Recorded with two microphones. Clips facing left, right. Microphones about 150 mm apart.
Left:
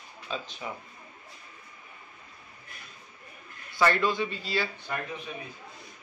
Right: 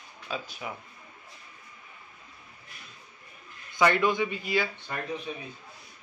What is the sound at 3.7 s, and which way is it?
Speech, 15° right (ahead or behind).